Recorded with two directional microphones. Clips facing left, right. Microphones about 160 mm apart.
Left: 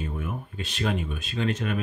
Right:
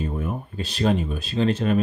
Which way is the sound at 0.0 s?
35° right (ahead or behind).